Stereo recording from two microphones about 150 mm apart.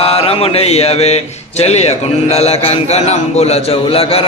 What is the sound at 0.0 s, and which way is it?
Speech, 40° left (ahead or behind).